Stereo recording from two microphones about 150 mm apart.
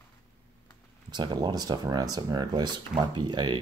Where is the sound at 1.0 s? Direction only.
30° right (ahead or behind).